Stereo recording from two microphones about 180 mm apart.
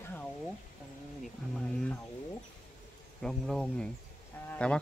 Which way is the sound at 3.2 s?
Centre (ahead or behind).